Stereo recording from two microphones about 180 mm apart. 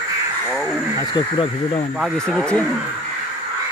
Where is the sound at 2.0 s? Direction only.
Centre (ahead or behind).